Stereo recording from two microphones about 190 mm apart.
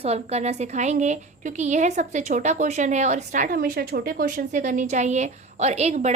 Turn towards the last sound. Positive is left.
turn(degrees=-35)  # may be behind; listen again after turning